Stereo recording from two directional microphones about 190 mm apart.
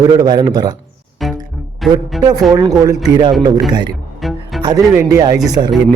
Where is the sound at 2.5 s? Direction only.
20° right (ahead or behind).